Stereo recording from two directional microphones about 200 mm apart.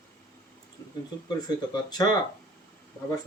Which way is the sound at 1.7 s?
20° left (ahead or behind).